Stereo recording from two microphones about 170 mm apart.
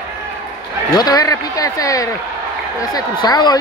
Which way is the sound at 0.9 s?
20° left (ahead or behind).